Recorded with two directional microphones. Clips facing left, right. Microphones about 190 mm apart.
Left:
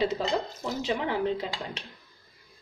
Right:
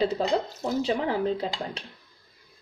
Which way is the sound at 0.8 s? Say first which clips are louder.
Left 1 dB; 35° right (ahead or behind).